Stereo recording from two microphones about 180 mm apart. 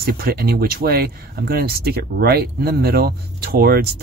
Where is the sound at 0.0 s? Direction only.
60° right (ahead or behind).